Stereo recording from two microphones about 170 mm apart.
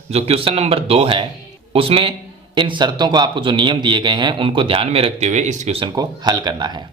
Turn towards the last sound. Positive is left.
turn(degrees=-25)  # may be behind; listen again after turning